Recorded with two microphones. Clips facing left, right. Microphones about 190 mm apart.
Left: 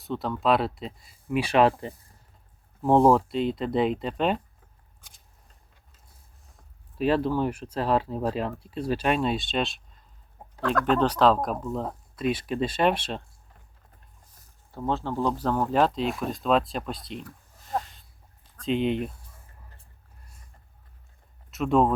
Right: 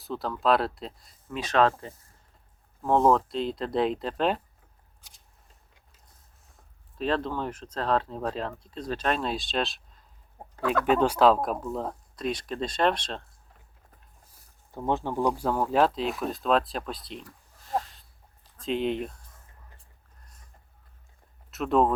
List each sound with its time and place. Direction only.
0.0 s speech: centre (ahead or behind)
4.9 s scissors: 50° left (ahead or behind)
7.0 s speech: 10° left (ahead or behind)
14.7 s speech: 15° right (ahead or behind); by 17.2 s centre (ahead or behind)
17.7 s a sound: centre (ahead or behind)
18.5 s speech: centre (ahead or behind)
21.5 s speech: centre (ahead or behind)